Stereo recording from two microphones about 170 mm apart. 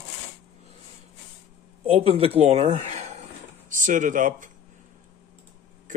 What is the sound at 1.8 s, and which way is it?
Speech, 35° right (ahead or behind).